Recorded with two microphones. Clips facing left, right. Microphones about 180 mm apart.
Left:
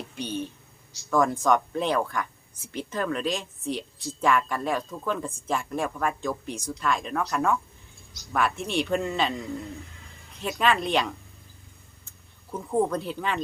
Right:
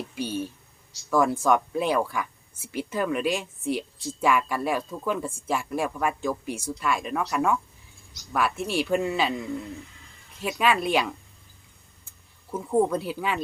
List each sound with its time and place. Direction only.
0.2 s a sound: 5° right (ahead or behind)
1.1 s speech: 5° right (ahead or behind)
10.4 s speech: 5° right (ahead or behind)
12.5 s speech: 5° right (ahead or behind)